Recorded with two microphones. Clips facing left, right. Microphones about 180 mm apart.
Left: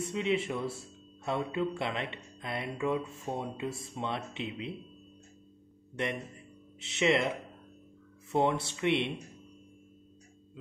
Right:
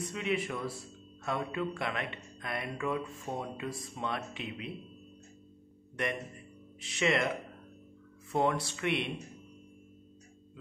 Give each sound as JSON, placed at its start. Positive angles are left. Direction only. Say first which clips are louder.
{"t": 0.0, "sound": "speech", "louder": "left 3 dB", "side_deg": 25}
{"t": 6.0, "sound": "speech", "louder": "left 1 dB", "side_deg": 25}
{"t": 8.3, "sound": "speech", "louder": "left 1 dB", "side_deg": 25}